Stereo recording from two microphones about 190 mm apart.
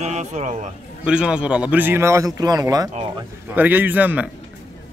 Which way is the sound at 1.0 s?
5° right (ahead or behind).